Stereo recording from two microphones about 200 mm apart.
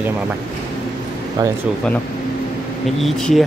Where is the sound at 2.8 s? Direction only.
Centre (ahead or behind).